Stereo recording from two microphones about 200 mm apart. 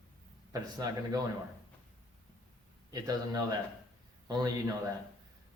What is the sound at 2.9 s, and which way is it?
Speech, 20° right (ahead or behind).